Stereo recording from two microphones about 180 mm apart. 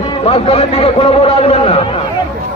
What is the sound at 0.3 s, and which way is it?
A man's voice, 30° left (ahead or behind).